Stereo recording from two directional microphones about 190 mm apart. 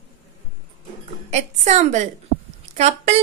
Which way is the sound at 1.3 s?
35° right (ahead or behind).